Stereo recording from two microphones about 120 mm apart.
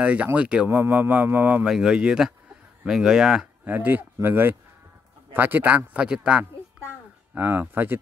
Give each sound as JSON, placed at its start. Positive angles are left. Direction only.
{"t": 0.0, "sound": "speech", "side_deg": -10}
{"t": 3.6, "sound": "speech", "side_deg": -15}